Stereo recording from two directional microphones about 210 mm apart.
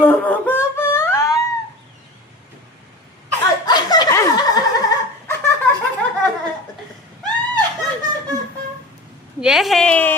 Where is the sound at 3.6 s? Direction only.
20° left (ahead or behind).